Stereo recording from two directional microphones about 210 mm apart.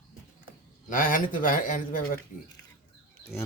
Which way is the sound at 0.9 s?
40° left (ahead or behind).